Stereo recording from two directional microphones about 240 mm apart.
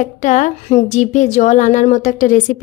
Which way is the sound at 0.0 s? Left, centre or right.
Left.